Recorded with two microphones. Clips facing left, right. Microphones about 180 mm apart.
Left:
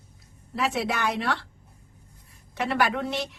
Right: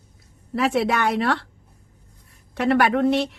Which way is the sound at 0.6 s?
55° right (ahead or behind).